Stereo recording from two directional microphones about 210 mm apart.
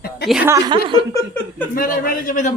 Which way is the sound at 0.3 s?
5° right (ahead or behind).